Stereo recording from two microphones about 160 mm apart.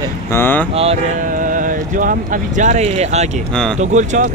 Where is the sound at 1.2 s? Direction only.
55° right (ahead or behind).